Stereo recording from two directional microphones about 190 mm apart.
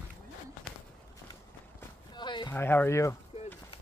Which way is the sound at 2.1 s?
25° left (ahead or behind).